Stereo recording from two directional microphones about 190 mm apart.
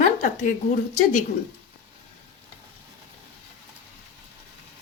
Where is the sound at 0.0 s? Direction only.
45° left (ahead or behind).